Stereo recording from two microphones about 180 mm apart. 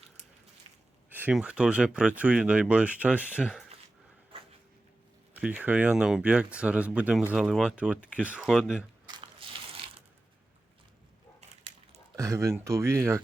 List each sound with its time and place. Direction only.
0.7 s a sound: 35° right (ahead or behind)
1.1 s speech: 10° right (ahead or behind)
5.3 s speech: 10° right (ahead or behind)
9.0 s crushing: 25° right (ahead or behind)
12.1 s speech: 15° right (ahead or behind)